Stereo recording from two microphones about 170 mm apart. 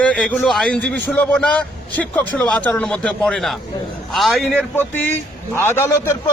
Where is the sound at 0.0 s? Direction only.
5° left (ahead or behind).